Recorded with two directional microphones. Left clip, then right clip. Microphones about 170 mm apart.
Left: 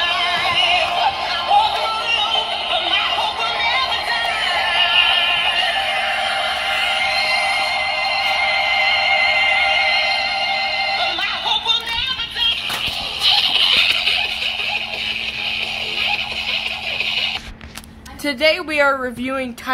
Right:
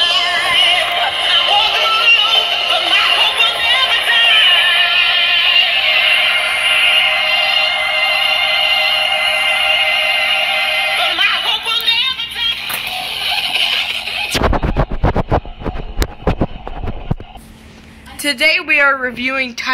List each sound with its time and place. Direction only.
0.0 s music: 50° right (ahead or behind)
1.4 s synthetic singing: 50° right (ahead or behind)
5.9 s music: 55° right (ahead or behind)
6.1 s music: 25° right (ahead or behind)
6.7 s music: 50° right (ahead or behind)
7.2 s music: 40° right (ahead or behind)
8.5 s music: 80° right
9.0 s music: 45° right (ahead or behind)
13.2 s a sound: 30° right (ahead or behind)
18.2 s a sound: centre (ahead or behind)
18.9 s speech: centre (ahead or behind)